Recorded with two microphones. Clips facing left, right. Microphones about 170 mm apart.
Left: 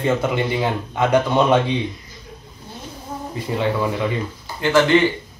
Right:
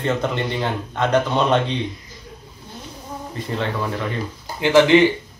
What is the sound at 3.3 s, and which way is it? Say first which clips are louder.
Speech: left 4 dB; 10° left (ahead or behind).